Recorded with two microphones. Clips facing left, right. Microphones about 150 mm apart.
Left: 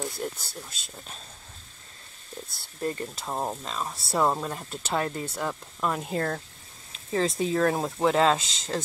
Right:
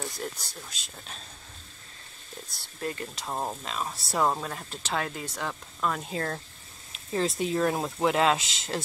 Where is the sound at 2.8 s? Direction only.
35° left (ahead or behind).